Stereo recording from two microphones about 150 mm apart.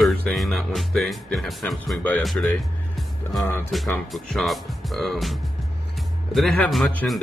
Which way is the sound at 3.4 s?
15° left (ahead or behind).